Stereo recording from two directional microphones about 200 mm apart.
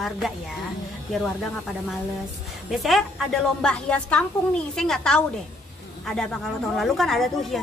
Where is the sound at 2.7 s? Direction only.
Centre (ahead or behind).